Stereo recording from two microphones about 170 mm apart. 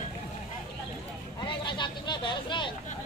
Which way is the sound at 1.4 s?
30° left (ahead or behind).